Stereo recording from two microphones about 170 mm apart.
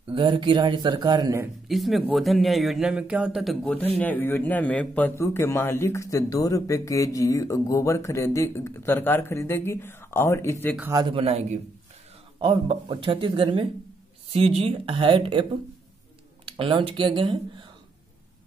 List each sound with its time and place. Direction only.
0.1 s speech: 30° right (ahead or behind)
1.7 s speech: centre (ahead or behind); by 10.7 s 15° left (ahead or behind)
10.8 s a man's voice: 15° right (ahead or behind)
11.1 s a man's voice: 35° right (ahead or behind)
16.4 s speech: 30° right (ahead or behind)